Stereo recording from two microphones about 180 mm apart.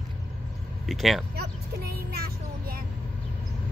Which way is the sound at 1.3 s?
60° right (ahead or behind).